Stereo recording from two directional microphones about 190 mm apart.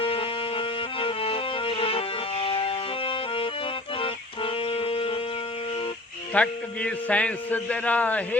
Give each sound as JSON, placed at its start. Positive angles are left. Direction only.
{"t": 0.0, "sound": "music", "side_deg": 30}
{"t": 6.3, "sound": "a man's voice", "side_deg": 5}